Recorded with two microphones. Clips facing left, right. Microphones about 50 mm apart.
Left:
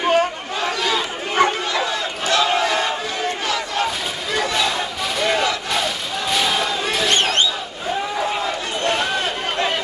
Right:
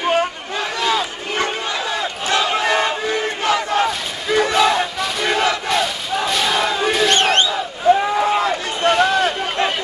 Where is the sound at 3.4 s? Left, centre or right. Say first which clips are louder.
Right 7 dB; right.